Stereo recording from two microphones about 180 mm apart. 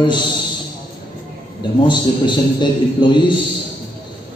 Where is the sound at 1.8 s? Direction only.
25° left (ahead or behind).